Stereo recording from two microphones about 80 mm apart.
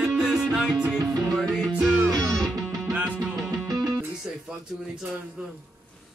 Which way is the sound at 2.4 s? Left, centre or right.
Centre.